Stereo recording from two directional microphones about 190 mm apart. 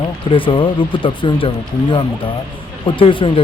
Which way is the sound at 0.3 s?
25° left (ahead or behind).